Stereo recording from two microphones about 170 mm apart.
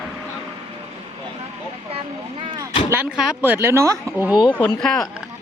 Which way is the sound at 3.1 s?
5° right (ahead or behind).